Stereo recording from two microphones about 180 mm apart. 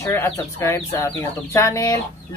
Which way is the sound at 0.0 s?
15° left (ahead or behind).